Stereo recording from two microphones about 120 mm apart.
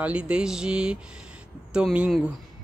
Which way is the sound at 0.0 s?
10° right (ahead or behind).